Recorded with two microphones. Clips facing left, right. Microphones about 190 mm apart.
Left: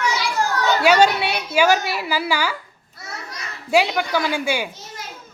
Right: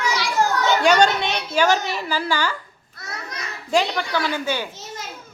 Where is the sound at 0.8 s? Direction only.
5° left (ahead or behind).